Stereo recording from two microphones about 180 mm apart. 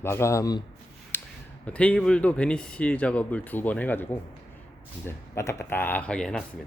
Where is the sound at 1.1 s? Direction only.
10° left (ahead or behind).